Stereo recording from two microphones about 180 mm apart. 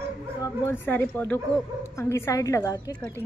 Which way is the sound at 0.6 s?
10° left (ahead or behind).